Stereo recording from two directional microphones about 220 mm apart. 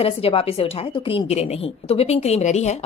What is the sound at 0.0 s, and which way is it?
A woman's voice, 25° left (ahead or behind).